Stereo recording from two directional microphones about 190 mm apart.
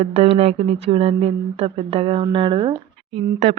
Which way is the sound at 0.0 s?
30° right (ahead or behind).